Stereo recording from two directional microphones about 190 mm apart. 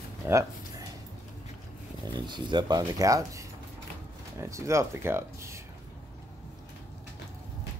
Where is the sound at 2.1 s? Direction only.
25° right (ahead or behind).